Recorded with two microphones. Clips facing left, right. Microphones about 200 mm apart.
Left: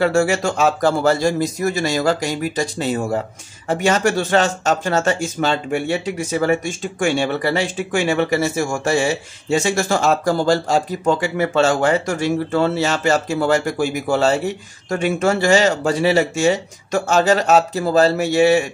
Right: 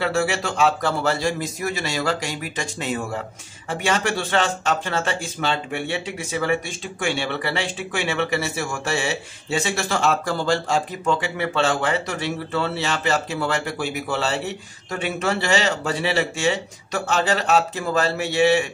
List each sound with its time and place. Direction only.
0.0 s speech: 45° left (ahead or behind)